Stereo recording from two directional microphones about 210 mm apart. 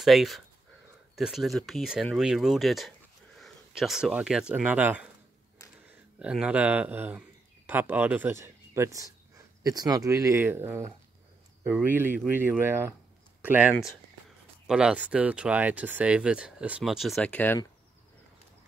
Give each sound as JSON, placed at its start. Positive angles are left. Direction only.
{"t": 0.0, "sound": "speech", "side_deg": 0}
{"t": 14.7, "sound": "speech", "side_deg": -5}